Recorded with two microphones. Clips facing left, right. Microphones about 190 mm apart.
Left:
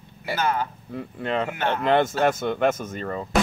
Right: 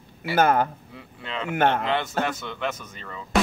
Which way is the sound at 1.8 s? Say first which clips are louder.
Left 6 dB; 50° left (ahead or behind).